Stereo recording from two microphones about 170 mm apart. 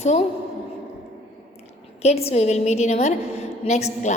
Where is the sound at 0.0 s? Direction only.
40° left (ahead or behind).